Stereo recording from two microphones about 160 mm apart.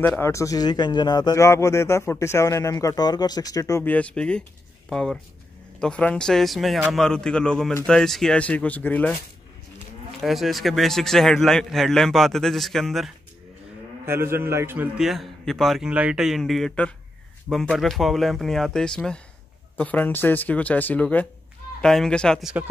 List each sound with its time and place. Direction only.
0.0 s a man's voice: 15° left (ahead or behind)
10.2 s a man's voice: centre (ahead or behind)
14.0 s a man's voice: 15° right (ahead or behind)
15.0 s a man's voice: centre (ahead or behind)